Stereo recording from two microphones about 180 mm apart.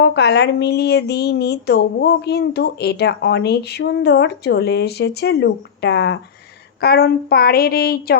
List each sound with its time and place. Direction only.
0.0 s speech: 70° left (ahead or behind)